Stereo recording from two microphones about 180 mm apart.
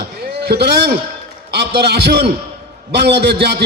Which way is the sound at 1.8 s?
65° right (ahead or behind).